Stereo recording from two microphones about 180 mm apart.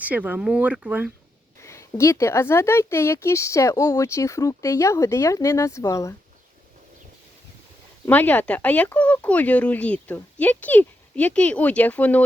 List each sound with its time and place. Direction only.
0.0 s speech: 10° right (ahead or behind)
1.6 s speech: 15° left (ahead or behind)
8.0 s speech: 10° left (ahead or behind)